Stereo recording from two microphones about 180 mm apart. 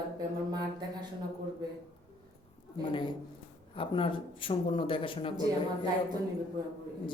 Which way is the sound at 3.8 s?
30° left (ahead or behind).